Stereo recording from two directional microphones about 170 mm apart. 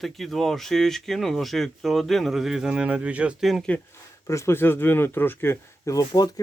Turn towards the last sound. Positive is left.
turn(degrees=25)  # may be behind; listen again after turning